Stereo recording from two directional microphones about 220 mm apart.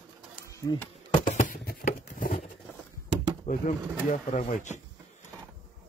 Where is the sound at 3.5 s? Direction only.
35° left (ahead or behind).